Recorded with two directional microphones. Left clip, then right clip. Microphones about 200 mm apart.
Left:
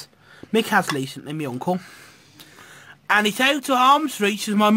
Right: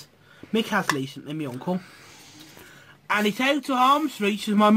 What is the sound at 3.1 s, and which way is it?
Speech, 50° left (ahead or behind).